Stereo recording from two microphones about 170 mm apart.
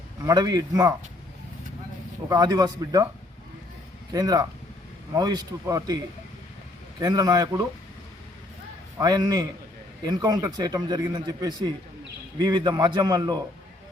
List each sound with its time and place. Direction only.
0.3 s speech: 20° right (ahead or behind)
2.3 s speech: 25° right (ahead or behind)
4.1 s speech: 20° right (ahead or behind)
7.0 s speech: 20° right (ahead or behind)
9.0 s speech: 20° right (ahead or behind)